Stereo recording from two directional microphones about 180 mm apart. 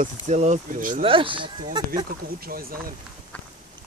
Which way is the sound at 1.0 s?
30° right (ahead or behind).